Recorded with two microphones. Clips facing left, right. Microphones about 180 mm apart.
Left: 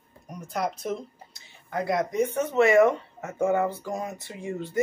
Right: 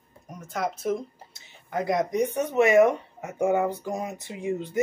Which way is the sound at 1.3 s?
20° right (ahead or behind).